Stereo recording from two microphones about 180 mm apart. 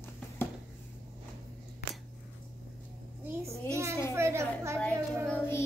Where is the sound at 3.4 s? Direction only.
15° right (ahead or behind).